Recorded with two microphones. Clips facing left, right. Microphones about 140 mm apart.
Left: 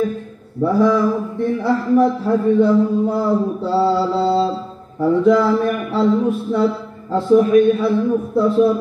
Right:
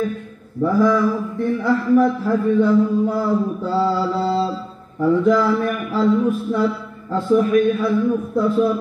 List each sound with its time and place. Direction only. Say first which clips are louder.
0.6 s a man's voice: left 1 dB; 30° left (ahead or behind)